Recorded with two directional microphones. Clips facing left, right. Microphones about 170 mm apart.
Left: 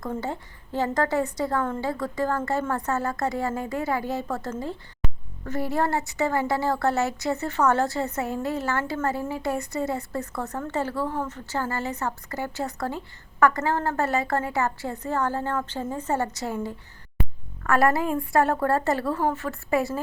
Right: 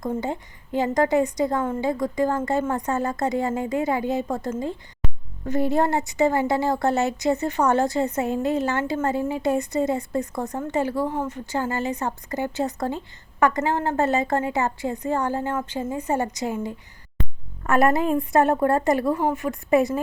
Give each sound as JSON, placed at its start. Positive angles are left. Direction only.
{"t": 0.0, "sound": "a woman's voice", "side_deg": -20}